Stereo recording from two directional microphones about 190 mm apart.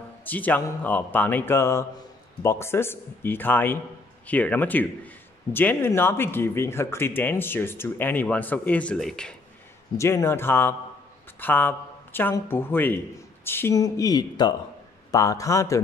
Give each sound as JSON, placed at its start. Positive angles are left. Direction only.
{"t": 0.2, "sound": "speech", "side_deg": 10}
{"t": 9.9, "sound": "speech", "side_deg": 15}